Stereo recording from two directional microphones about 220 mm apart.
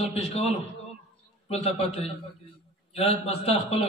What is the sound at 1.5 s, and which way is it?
Speech, 30° left (ahead or behind).